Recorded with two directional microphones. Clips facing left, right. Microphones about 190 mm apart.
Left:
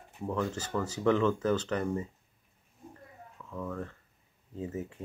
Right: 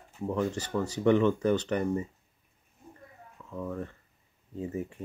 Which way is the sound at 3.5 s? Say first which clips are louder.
Right 2 dB; 15° right (ahead or behind).